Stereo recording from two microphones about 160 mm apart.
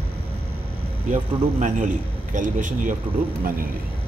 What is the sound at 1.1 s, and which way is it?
A man's voice, 50° right (ahead or behind).